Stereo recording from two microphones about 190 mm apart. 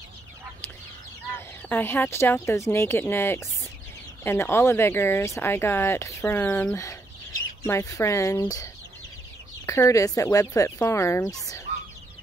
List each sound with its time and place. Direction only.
1.3 s speech: 10° left (ahead or behind)
9.7 s speech: 15° left (ahead or behind)